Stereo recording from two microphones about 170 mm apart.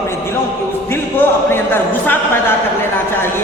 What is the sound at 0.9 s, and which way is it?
Speech, 10° left (ahead or behind).